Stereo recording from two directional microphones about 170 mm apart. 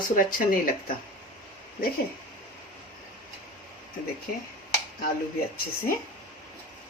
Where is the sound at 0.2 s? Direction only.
55° left (ahead or behind).